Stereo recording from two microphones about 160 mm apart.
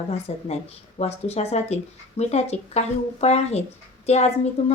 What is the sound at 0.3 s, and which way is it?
A woman's voice, 40° left (ahead or behind).